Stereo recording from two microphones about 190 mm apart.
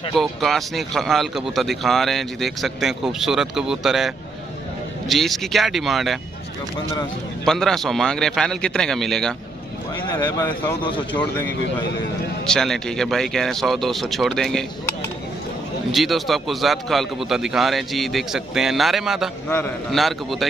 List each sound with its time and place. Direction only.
0.1 s a man's voice: centre (ahead or behind)
7.4 s a man's voice: centre (ahead or behind)
10.0 s speech: 20° left (ahead or behind)
10.8 s speech: 25° left (ahead or behind)
12.4 s a man's voice: 5° left (ahead or behind)
15.9 s a man's voice: centre (ahead or behind)